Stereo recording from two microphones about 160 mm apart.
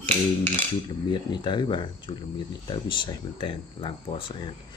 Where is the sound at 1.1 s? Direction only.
30° left (ahead or behind).